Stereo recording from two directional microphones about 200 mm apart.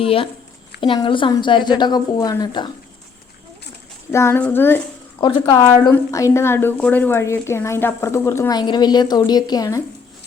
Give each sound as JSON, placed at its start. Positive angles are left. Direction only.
{"t": 0.0, "sound": "a woman's voice", "side_deg": 30}
{"t": 4.1, "sound": "a woman's voice", "side_deg": 10}